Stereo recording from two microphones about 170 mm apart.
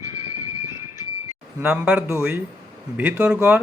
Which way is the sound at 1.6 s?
5° right (ahead or behind).